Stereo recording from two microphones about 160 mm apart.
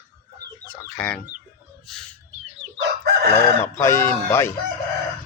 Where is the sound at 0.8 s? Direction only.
5° left (ahead or behind).